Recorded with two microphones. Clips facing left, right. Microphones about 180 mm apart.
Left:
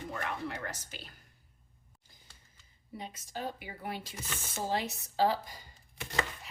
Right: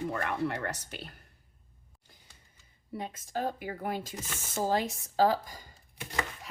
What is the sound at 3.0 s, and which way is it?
Speech, 50° right (ahead or behind).